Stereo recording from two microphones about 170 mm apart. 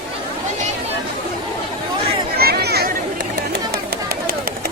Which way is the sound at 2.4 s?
70° right (ahead or behind).